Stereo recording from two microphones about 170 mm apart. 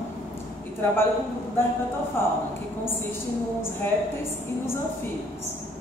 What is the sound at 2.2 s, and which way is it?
Clip-clop, 15° left (ahead or behind).